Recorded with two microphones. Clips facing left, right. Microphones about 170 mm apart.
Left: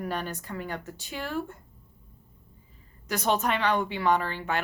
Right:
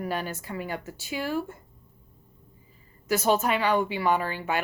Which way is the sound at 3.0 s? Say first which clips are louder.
Right 3 dB; 5° right (ahead or behind).